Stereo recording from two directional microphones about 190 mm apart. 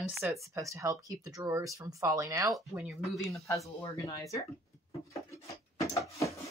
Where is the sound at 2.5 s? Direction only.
Centre (ahead or behind).